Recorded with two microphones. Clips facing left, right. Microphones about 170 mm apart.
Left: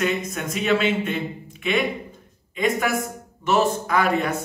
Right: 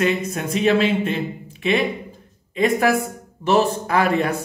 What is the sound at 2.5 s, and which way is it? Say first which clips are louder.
Speech: right 5 dB; 35° right (ahead or behind).